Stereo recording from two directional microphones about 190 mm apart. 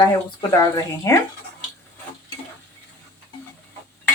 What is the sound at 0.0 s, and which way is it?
A woman's voice, 20° left (ahead or behind).